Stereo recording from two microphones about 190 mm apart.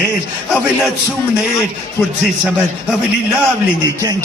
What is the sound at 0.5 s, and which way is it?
Speech, centre (ahead or behind).